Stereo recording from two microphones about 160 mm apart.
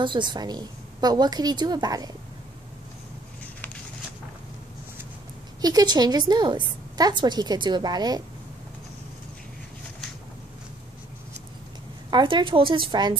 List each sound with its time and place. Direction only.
0.0 s a woman's voice: 30° right (ahead or behind)
5.6 s a woman's voice: 25° right (ahead or behind)
12.1 s a woman's voice: 30° right (ahead or behind)